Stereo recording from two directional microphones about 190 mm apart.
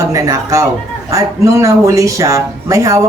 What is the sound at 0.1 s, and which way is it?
Speech, 15° right (ahead or behind).